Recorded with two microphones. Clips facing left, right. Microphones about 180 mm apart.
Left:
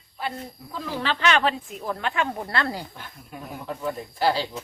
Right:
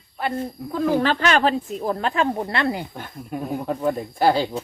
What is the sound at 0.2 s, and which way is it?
Speech, 55° right (ahead or behind).